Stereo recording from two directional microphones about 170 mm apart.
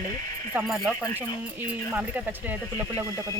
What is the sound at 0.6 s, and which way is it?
Speech, centre (ahead or behind).